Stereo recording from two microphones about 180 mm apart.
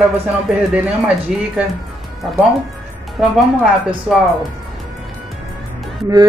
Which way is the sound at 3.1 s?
Centre (ahead or behind).